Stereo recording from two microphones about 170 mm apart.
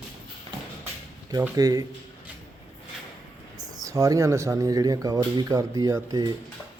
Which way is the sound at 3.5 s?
20° right (ahead or behind).